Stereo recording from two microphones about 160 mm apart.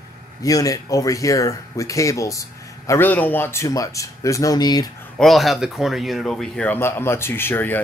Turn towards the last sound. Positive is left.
turn(degrees=10)  # may be behind; listen again after turning